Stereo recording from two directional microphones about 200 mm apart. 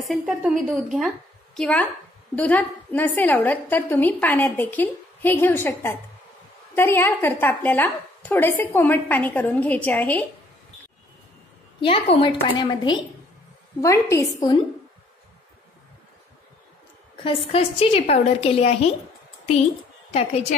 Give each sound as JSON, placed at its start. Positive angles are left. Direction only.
{"t": 0.0, "sound": "a woman's voice", "side_deg": 0}
{"t": 11.8, "sound": "a woman's voice", "side_deg": 25}
{"t": 17.5, "sound": "a woman's voice", "side_deg": 30}
{"t": 20.1, "sound": "a woman's voice", "side_deg": 30}